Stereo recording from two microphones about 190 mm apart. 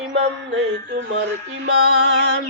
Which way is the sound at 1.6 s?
60° right (ahead or behind).